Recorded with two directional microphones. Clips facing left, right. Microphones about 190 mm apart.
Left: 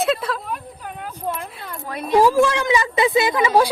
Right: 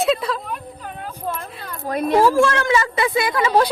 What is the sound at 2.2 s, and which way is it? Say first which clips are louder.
A woman's voice: left 1 dB; 15° left (ahead or behind).